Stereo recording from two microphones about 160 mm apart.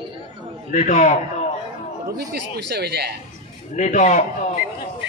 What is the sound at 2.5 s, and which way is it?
Speech, 90° right.